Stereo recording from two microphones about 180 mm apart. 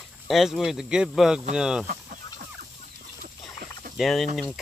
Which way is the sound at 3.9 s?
Centre (ahead or behind).